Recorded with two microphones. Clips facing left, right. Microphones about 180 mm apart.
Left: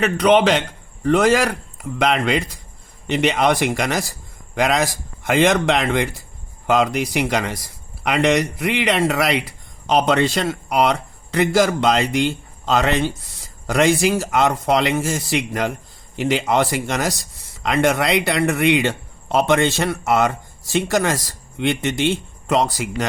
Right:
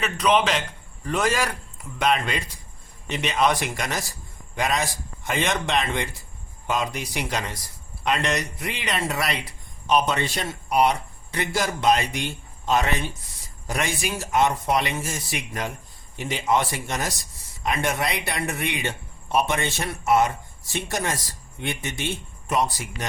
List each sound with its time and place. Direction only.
0.0 s a man's voice: 70° left (ahead or behind)
1.0 s speech: 85° left